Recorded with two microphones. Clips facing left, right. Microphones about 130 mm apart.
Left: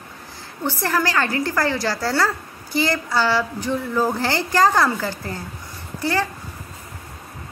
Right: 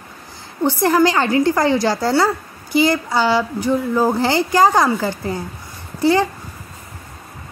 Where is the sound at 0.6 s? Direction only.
20° right (ahead or behind).